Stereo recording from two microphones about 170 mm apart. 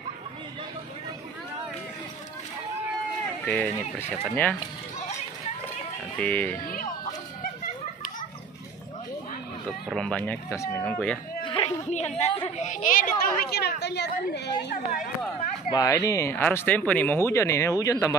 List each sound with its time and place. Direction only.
3.4 s speech: 5° left (ahead or behind)
6.1 s speech: 10° left (ahead or behind)
9.7 s speech: centre (ahead or behind)
11.4 s a sound: 30° left (ahead or behind)
11.9 s a woman's voice: 45° left (ahead or behind); by 14.7 s 85° left
15.7 s speech: 20° left (ahead or behind)